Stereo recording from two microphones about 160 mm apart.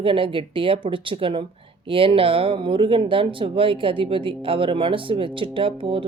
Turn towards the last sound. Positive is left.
turn(degrees=-35)  # may be behind; listen again after turning